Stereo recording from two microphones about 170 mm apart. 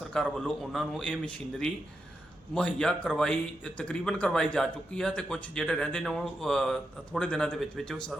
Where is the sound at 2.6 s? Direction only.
5° left (ahead or behind).